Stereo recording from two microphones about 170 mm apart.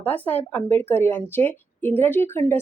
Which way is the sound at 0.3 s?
10° left (ahead or behind).